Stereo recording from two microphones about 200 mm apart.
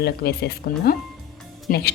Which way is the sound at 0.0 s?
55° left (ahead or behind).